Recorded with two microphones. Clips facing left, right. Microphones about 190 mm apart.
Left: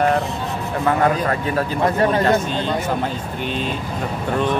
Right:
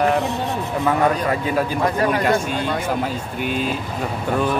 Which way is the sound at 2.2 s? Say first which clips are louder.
Left 1 dB; 10° right (ahead or behind).